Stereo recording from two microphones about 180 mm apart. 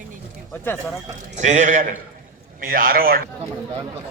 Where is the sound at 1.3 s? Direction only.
40° right (ahead or behind).